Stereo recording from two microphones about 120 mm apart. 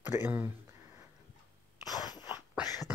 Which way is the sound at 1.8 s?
35° left (ahead or behind).